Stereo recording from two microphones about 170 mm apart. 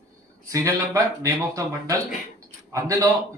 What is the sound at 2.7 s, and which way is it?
Speech, 20° right (ahead or behind).